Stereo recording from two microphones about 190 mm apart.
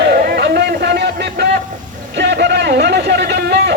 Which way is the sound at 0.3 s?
60° right (ahead or behind).